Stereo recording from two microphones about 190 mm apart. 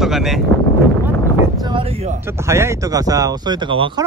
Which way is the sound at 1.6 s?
25° right (ahead or behind).